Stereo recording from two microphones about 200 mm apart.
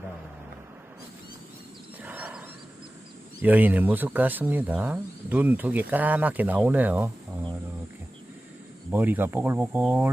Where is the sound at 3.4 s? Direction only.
10° right (ahead or behind).